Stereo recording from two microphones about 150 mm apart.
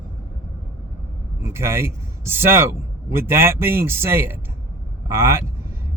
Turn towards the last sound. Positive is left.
turn(degrees=-20)  # may be behind; listen again after turning